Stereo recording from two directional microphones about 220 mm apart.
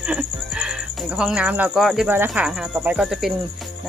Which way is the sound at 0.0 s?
5° right (ahead or behind).